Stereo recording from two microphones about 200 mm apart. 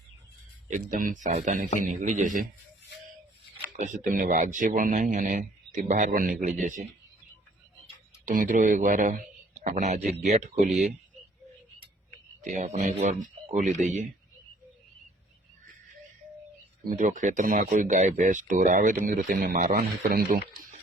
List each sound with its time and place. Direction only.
0.7 s speech: 40° right (ahead or behind)
3.8 s speech: 40° right (ahead or behind)
8.2 s speech: 40° right (ahead or behind)
12.5 s speech: 35° right (ahead or behind)
16.9 s speech: 40° right (ahead or behind)